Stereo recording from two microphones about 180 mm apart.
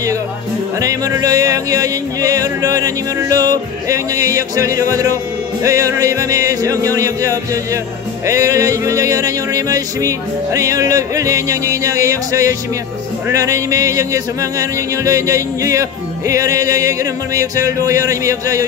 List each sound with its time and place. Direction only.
0.7 s music: 20° right (ahead or behind)